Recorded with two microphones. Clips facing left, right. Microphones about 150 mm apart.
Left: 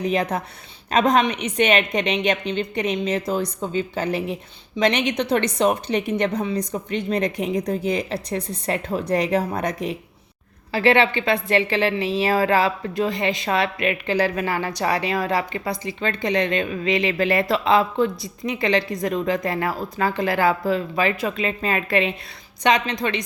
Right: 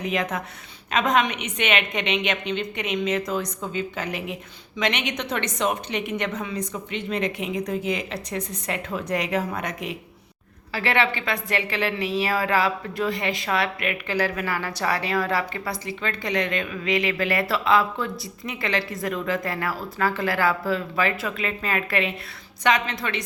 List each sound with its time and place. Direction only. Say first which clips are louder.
0.0 s a woman's voice: left 4 dB; 35° left (ahead or behind)